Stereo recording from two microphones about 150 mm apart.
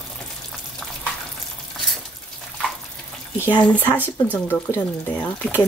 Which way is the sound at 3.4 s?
10° left (ahead or behind).